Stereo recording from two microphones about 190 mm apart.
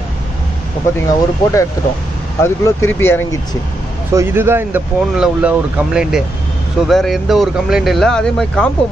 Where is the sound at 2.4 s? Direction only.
10° left (ahead or behind).